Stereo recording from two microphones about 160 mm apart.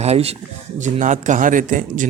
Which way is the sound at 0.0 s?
40° right (ahead or behind).